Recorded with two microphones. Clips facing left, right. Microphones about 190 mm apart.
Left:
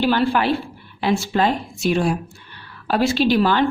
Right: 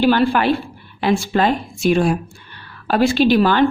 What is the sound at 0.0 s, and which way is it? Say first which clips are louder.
A woman's voice: right 3 dB; 60° right (ahead or behind).